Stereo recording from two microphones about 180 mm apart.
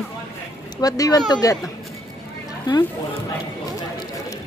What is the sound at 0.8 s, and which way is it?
Speech, 20° left (ahead or behind).